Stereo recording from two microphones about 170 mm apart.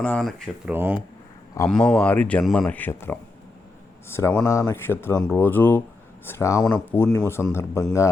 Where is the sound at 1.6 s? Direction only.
5° left (ahead or behind).